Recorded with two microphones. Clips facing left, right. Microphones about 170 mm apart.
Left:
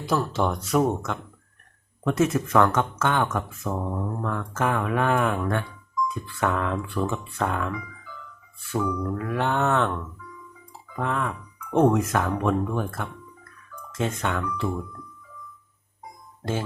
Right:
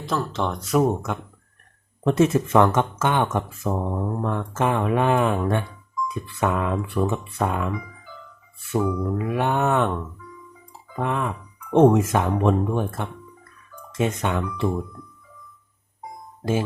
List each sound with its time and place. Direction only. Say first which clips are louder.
0.0 s speech: left 1 dB; 5° left (ahead or behind)
0.9 s mantra: right 2 dB; 10° right (ahead or behind)
2.0 s speech: right 4 dB; 30° right (ahead or behind)
8.7 s speech: right 3 dB; 25° right (ahead or behind)
9.0 s mantra: right 3 dB; 15° right (ahead or behind)
10.9 s speech: right 2 dB; 15° right (ahead or behind)